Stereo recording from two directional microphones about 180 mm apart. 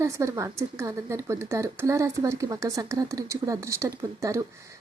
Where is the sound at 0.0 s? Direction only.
15° right (ahead or behind).